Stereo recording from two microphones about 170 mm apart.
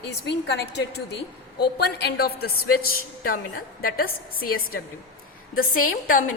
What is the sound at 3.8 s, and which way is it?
A woman's voice, 60° left (ahead or behind).